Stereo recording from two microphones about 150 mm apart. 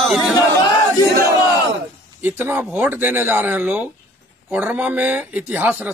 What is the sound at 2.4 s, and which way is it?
A man's voice, 15° right (ahead or behind).